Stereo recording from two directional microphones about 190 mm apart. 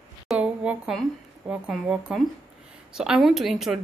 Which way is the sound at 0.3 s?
5° right (ahead or behind).